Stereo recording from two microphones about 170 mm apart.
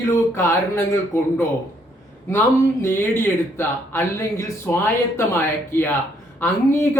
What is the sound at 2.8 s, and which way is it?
Speech, 15° left (ahead or behind).